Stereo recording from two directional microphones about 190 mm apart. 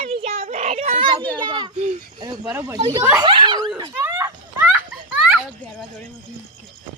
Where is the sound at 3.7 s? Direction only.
20° right (ahead or behind).